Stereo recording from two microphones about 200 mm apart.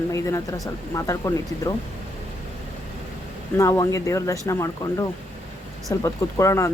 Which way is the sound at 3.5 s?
15° left (ahead or behind).